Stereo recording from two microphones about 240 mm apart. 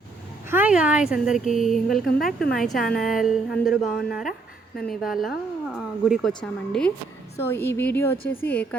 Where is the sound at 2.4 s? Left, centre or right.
Left.